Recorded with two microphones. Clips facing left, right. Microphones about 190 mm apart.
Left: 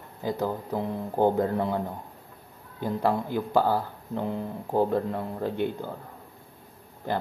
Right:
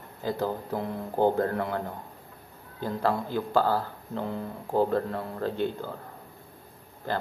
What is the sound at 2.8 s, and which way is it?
Speech, 15° left (ahead or behind).